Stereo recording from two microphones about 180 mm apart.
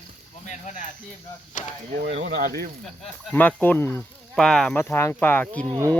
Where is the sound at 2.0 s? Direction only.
70° right (ahead or behind).